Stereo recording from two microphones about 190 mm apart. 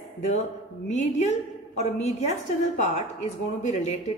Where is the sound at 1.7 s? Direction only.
35° left (ahead or behind).